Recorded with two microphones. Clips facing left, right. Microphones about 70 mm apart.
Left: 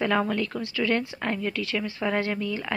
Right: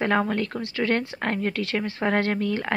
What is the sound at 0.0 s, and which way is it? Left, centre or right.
A woman's voice, right.